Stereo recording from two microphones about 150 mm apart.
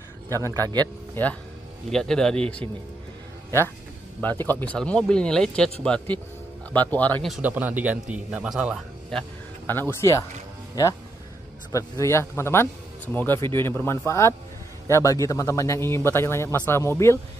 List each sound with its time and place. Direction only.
0.6 s speech: 25° right (ahead or behind)
1.9 s a man's voice: 5° left (ahead or behind)
4.2 s speech: 15° left (ahead or behind)
7.2 s a man's voice: 5° right (ahead or behind)
9.7 s speech: 15° left (ahead or behind)
11.7 s speech: 20° left (ahead or behind)